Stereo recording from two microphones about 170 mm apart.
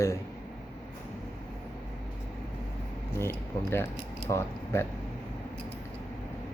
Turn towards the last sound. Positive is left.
turn(degrees=15)  # may be behind; listen again after turning